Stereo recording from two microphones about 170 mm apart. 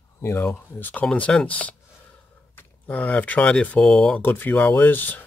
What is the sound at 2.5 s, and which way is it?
Speech, 10° left (ahead or behind).